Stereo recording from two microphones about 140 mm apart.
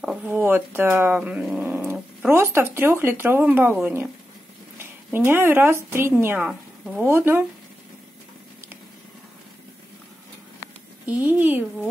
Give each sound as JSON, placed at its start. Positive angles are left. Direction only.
{"t": 0.0, "sound": "a sound", "side_deg": -5}
{"t": 0.3, "sound": "speech", "side_deg": -15}
{"t": 11.1, "sound": "speech", "side_deg": -10}